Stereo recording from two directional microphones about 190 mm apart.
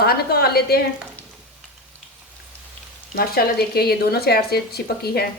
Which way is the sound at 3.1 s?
55° left (ahead or behind).